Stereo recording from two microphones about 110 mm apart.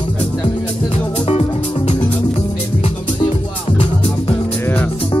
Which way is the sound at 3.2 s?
50° left (ahead or behind).